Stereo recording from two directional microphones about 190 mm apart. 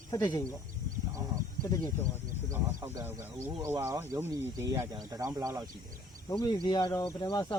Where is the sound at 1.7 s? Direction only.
20° left (ahead or behind).